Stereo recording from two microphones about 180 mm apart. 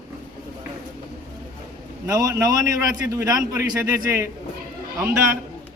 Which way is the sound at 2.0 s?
20° right (ahead or behind).